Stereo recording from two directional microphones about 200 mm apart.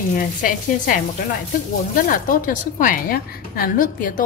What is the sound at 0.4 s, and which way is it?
Speech, 45° left (ahead or behind).